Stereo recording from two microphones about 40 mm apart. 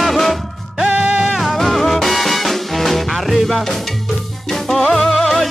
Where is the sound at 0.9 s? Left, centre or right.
Right.